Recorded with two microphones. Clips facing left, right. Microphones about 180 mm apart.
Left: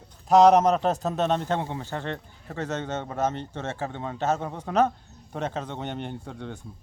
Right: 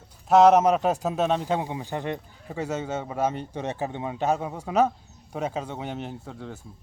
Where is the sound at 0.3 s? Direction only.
5° right (ahead or behind).